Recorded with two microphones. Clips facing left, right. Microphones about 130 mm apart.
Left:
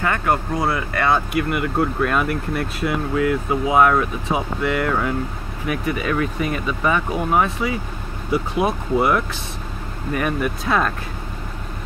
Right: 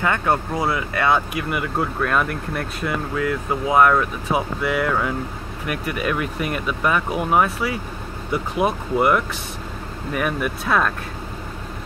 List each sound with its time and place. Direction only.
0.0 s speech: 20° right (ahead or behind)
0.6 s speech: centre (ahead or behind)
0.9 s speech: 15° right (ahead or behind)
1.5 s speech: centre (ahead or behind)